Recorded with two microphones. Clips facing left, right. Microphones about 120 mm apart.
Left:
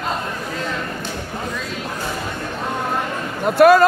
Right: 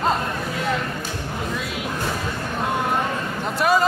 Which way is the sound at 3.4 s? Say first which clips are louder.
Left 9 dB; 55° left (ahead or behind).